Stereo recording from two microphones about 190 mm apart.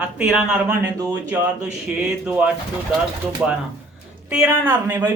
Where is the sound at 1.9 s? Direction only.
5° right (ahead or behind).